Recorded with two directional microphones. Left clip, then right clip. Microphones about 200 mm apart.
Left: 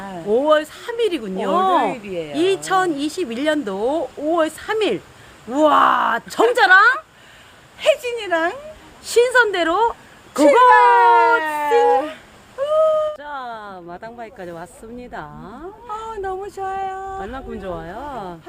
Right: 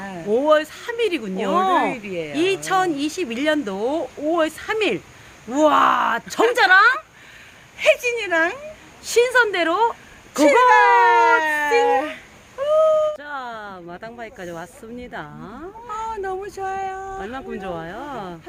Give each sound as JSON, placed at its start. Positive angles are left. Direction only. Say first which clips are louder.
{"t": 0.3, "sound": "speech", "louder": "left 1 dB", "side_deg": 5}
{"t": 1.8, "sound": "speech", "louder": "left 1 dB", "side_deg": -15}
{"t": 2.3, "sound": "speech", "louder": "left 2 dB", "side_deg": 5}
{"t": 7.8, "sound": "speech", "louder": "even", "side_deg": -15}
{"t": 9.0, "sound": "speech", "louder": "left 2 dB", "side_deg": 10}
{"t": 10.7, "sound": "speech", "louder": "left 2 dB", "side_deg": -20}
{"t": 15.9, "sound": "speech", "louder": "even", "side_deg": 0}
{"t": 17.2, "sound": "speech", "louder": "even", "side_deg": -15}